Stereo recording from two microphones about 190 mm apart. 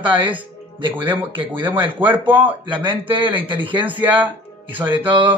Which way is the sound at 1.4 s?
10° right (ahead or behind).